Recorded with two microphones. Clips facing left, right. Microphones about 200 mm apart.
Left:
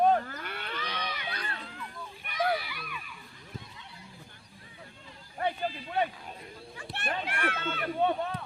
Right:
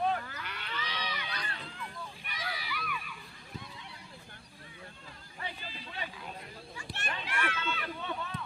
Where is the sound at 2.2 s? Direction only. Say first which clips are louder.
Left 15 dB; 55° left (ahead or behind).